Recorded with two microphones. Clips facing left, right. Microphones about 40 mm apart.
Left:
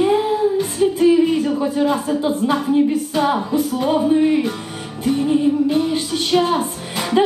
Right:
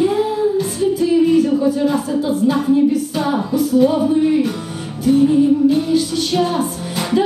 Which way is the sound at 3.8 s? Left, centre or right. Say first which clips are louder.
Left 1 dB; left.